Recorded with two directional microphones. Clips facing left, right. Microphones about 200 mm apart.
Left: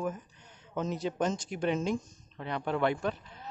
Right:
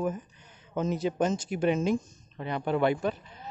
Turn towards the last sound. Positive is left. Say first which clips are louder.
# right 3 dB
turn(degrees=-5)  # may be behind; listen again after turning